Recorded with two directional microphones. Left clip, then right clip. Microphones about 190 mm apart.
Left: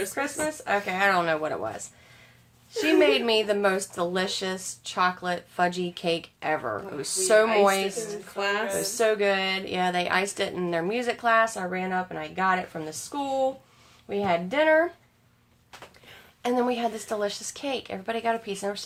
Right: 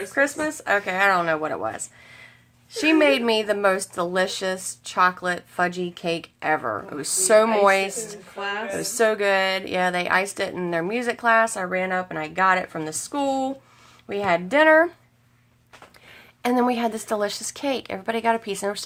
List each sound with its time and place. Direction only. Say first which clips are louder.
0.1 s a woman's voice: right 6 dB; 30° right (ahead or behind)
2.8 s a woman's voice: right 3 dB; 25° right (ahead or behind)
8.4 s speech: left 1 dB; 10° left (ahead or behind)
8.8 s speech: right 5 dB; 35° right (ahead or behind)
16.4 s speech: right 4 dB; 30° right (ahead or behind)